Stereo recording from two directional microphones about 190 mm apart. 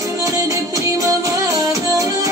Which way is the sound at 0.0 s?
15° right (ahead or behind).